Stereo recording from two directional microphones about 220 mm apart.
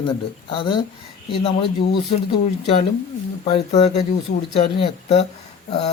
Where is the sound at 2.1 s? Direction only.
30° left (ahead or behind).